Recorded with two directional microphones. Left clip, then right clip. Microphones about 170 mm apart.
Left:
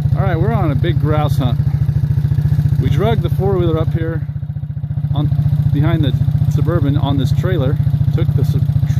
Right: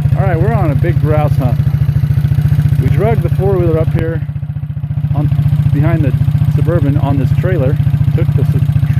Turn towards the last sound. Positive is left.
turn(degrees=15)  # may be behind; listen again after turning